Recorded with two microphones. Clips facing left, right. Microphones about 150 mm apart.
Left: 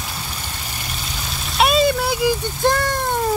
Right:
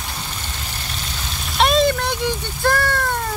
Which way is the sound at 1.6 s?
5° left (ahead or behind).